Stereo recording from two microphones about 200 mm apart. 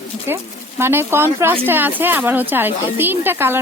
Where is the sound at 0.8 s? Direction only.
10° right (ahead or behind).